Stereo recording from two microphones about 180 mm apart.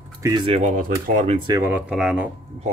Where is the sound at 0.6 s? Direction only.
45° right (ahead or behind).